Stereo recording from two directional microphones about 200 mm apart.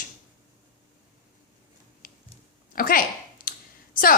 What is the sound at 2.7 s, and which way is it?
Speech, 45° left (ahead or behind).